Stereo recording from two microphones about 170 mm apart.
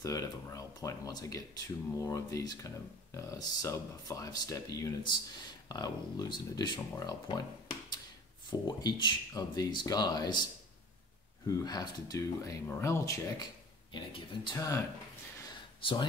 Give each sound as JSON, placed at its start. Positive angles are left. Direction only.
{"t": 0.0, "sound": "speech", "side_deg": 20}
{"t": 8.5, "sound": "speech", "side_deg": 25}
{"t": 15.8, "sound": "speech", "side_deg": 30}